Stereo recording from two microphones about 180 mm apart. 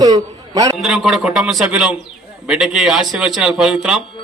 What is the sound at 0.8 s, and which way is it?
A man's voice, centre (ahead or behind).